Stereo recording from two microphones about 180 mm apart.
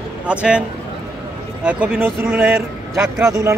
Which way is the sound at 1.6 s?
5° right (ahead or behind).